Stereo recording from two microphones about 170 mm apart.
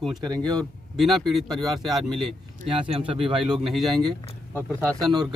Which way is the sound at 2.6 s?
30° right (ahead or behind).